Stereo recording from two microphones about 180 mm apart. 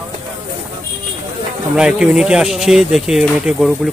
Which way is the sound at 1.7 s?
5° right (ahead or behind).